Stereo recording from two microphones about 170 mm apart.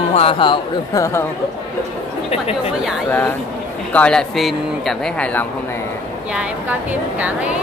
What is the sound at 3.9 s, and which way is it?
Speech, 5° left (ahead or behind).